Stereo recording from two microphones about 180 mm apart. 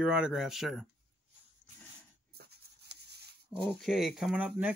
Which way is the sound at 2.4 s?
65° right (ahead or behind).